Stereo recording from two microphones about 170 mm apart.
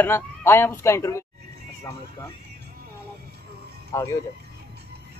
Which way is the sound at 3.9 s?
20° left (ahead or behind).